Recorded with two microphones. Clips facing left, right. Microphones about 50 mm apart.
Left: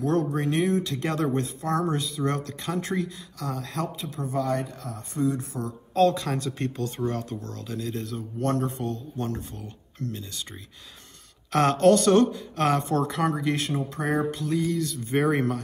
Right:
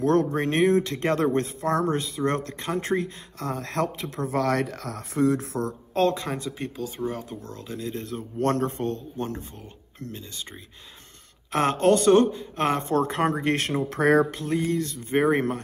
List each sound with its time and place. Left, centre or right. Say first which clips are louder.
0.0 s speech: right 3 dB; right
5.7 s speech: left 3 dB; right
6.2 s speech: left 2 dB; centre
7.4 s speech: even; right
8.4 s speech: right 2 dB; right
9.1 s speech: even; right
11.5 s speech: left 2 dB; right
13.8 s speech: right 10 dB; right
14.3 s a sound: right 1 dB; right
15.3 s speech: right 1 dB; right